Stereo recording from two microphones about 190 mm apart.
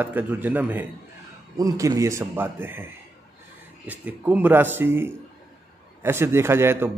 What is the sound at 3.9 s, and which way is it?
A man's voice, 10° right (ahead or behind).